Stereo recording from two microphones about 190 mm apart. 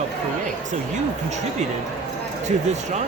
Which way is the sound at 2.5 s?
35° right (ahead or behind).